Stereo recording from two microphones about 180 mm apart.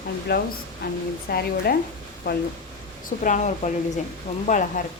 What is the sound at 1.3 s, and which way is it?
Speech, 60° left (ahead or behind).